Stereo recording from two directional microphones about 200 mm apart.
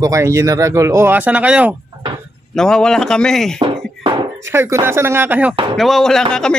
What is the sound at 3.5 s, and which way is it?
Music, 30° right (ahead or behind).